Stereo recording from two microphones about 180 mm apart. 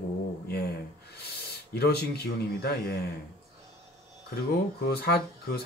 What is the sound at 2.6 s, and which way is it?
Speech, 60° left (ahead or behind).